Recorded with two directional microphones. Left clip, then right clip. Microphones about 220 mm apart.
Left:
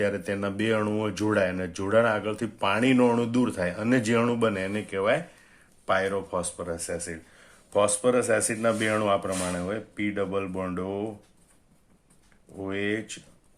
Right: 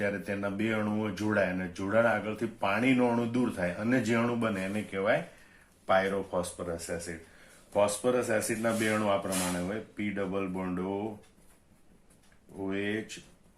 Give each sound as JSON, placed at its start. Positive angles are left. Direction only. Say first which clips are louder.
{"t": 0.0, "sound": "speech", "louder": "left 5 dB", "side_deg": 50}
{"t": 10.2, "sound": "speech", "louder": "left 4 dB", "side_deg": 45}
{"t": 12.6, "sound": "speech", "louder": "left 4 dB", "side_deg": 45}